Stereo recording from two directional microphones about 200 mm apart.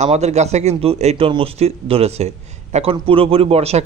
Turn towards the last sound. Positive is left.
turn(degrees=-30)  # may be behind; listen again after turning